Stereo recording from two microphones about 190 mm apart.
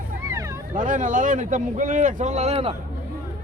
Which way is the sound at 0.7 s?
40° right (ahead or behind).